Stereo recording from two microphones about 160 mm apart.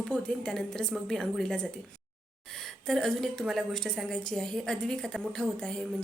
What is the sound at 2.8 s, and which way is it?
A woman's voice, centre (ahead or behind).